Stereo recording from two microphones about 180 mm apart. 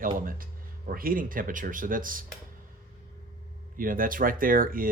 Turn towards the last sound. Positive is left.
turn(degrees=-50)  # may be behind; listen again after turning